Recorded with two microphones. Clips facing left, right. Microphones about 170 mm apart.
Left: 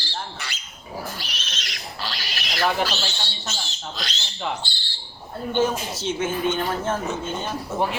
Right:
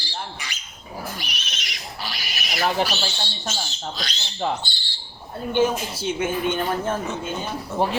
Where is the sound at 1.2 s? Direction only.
15° right (ahead or behind).